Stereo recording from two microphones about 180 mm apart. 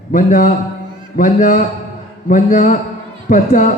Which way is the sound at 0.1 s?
45° left (ahead or behind).